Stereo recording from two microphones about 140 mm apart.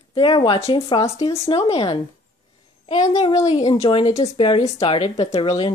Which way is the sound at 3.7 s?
45° left (ahead or behind).